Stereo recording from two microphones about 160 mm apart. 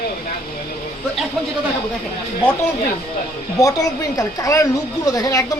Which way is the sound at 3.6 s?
20° left (ahead or behind).